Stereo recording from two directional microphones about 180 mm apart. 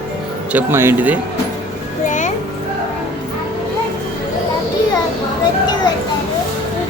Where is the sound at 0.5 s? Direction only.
15° right (ahead or behind).